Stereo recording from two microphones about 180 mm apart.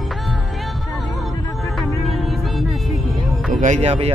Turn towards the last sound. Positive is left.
turn(degrees=-35)  # may be behind; listen again after turning